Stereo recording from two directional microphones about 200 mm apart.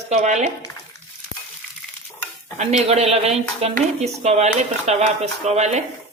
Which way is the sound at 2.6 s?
35° right (ahead or behind).